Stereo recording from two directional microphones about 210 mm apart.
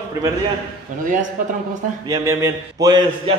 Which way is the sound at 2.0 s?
15° right (ahead or behind).